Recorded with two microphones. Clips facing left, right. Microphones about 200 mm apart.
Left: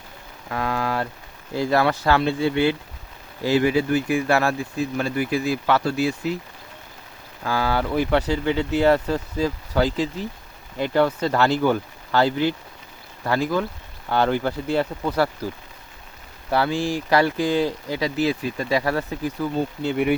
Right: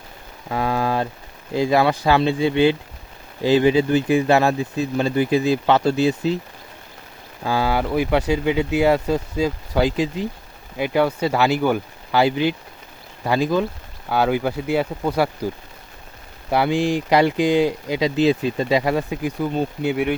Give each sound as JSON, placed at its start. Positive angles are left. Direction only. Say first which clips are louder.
{"t": 0.5, "sound": "speech", "louder": "right 3 dB", "side_deg": -20}
{"t": 7.4, "sound": "speech", "louder": "right 2 dB", "side_deg": -15}
{"t": 16.5, "sound": "speech", "louder": "right 3 dB", "side_deg": -15}